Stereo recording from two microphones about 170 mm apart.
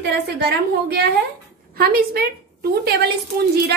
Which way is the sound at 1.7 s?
65° right (ahead or behind).